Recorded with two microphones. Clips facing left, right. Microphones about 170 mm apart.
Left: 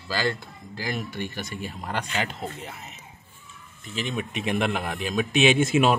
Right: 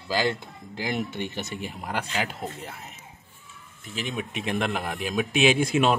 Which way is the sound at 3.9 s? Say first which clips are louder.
Left 2 dB; centre (ahead or behind).